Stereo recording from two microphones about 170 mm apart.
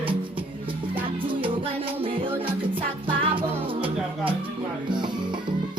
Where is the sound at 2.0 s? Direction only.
30° right (ahead or behind).